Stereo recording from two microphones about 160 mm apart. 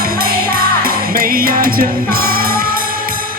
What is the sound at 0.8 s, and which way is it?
Music, 65° right (ahead or behind).